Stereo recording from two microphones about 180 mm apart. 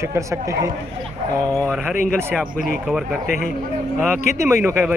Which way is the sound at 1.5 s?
Centre (ahead or behind).